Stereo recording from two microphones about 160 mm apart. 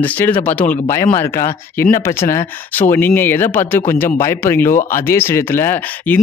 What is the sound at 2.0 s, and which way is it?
Speech, 15° left (ahead or behind).